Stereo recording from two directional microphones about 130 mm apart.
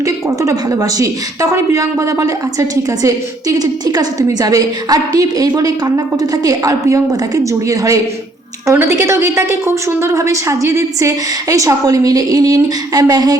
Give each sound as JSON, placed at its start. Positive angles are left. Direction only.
{"t": 0.0, "sound": "a woman's voice", "side_deg": -25}